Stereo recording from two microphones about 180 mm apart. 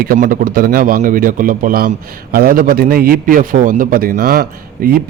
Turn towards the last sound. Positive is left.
turn(degrees=-55)  # may be behind; listen again after turning